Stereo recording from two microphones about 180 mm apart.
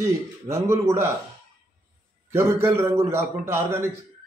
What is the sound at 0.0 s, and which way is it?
A man's voice, 15° right (ahead or behind).